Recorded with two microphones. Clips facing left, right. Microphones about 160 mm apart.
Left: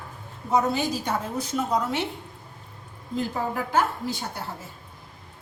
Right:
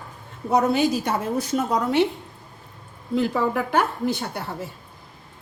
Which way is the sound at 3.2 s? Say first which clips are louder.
Right 6 dB; 70° right (ahead or behind).